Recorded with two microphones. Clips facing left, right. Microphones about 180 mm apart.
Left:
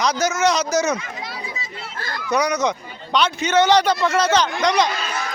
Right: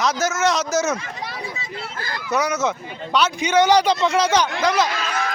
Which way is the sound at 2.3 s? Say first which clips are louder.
Left 1 dB; 5° right (ahead or behind).